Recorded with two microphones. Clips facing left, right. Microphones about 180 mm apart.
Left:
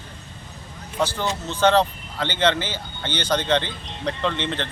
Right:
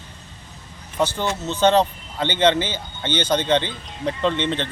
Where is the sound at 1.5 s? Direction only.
20° right (ahead or behind).